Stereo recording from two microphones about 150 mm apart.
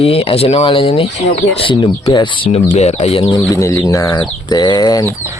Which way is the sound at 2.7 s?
45° left (ahead or behind).